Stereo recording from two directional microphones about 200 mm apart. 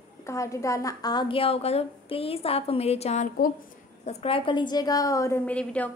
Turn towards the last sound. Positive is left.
turn(degrees=5)  # may be behind; listen again after turning